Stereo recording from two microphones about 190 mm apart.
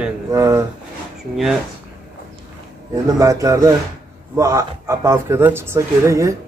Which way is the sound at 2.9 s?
15° right (ahead or behind).